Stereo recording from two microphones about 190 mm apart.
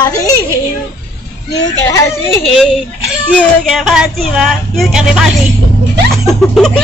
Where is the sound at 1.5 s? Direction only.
20° left (ahead or behind).